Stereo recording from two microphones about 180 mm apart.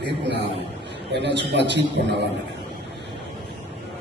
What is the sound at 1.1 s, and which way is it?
A man's voice, 75° right (ahead or behind).